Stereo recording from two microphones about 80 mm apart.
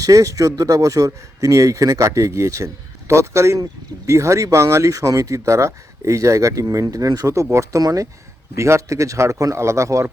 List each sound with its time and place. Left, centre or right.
0.0 s speech: right